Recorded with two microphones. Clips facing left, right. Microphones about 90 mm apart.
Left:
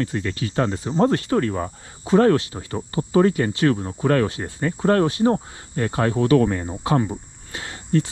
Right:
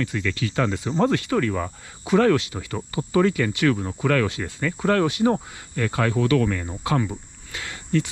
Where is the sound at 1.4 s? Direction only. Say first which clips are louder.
Left 1 dB; 35° left (ahead or behind).